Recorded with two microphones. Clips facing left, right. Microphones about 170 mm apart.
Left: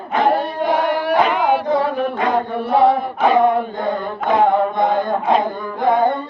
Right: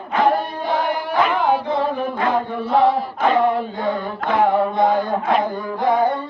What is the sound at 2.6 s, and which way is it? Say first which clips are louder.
Chant: left 2 dB; 60° left (ahead or behind).